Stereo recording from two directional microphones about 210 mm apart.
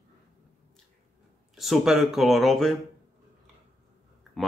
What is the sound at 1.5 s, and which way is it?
Speech, centre (ahead or behind).